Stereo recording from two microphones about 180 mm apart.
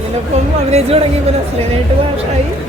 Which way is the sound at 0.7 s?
35° right (ahead or behind).